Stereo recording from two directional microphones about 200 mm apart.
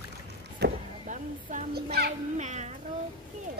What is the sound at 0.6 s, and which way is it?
Vehicle, 55° right (ahead or behind).